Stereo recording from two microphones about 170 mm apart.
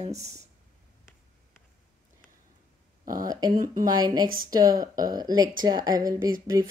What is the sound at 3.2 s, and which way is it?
A woman's voice, 25° right (ahead or behind).